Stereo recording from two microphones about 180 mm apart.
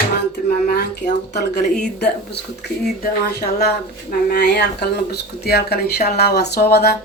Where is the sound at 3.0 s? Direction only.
55° left (ahead or behind).